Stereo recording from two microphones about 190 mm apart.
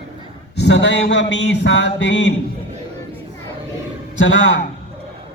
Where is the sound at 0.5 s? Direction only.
65° left (ahead or behind).